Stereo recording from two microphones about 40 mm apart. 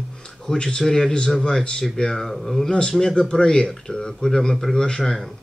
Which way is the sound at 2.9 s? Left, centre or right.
Centre.